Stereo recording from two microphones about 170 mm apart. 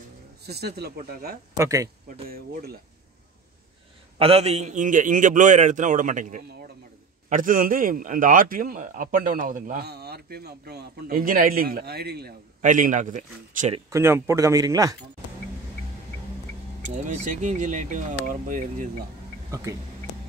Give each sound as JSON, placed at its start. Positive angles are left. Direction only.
{"t": 0.5, "sound": "a man's voice", "side_deg": -70}
{"t": 1.5, "sound": "speech", "side_deg": -20}
{"t": 2.2, "sound": "a man's voice", "side_deg": -60}
{"t": 4.2, "sound": "a man's voice", "side_deg": -35}
{"t": 12.6, "sound": "a man's voice", "side_deg": -50}
{"t": 13.8, "sound": "speech", "side_deg": -15}
{"t": 17.1, "sound": "a man's voice", "side_deg": -45}